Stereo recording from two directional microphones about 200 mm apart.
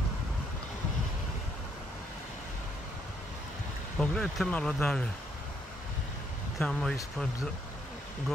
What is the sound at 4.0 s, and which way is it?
Speech, 5° left (ahead or behind).